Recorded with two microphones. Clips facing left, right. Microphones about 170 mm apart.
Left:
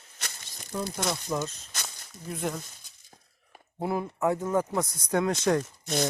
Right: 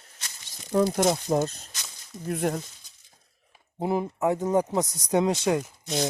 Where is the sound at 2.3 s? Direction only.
55° right (ahead or behind).